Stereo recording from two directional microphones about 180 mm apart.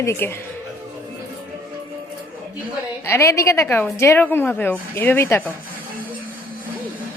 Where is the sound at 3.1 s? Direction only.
15° left (ahead or behind).